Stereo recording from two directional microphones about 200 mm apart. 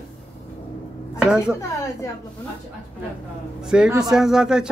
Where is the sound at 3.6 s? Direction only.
5° right (ahead or behind).